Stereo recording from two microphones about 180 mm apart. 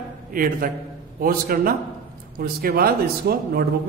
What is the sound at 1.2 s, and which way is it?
A man's voice, 55° right (ahead or behind).